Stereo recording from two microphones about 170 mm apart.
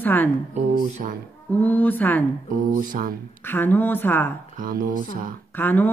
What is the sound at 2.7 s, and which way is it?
Speech, 55° right (ahead or behind).